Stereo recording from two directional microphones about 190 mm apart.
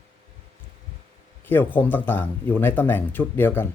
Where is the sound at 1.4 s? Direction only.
10° left (ahead or behind).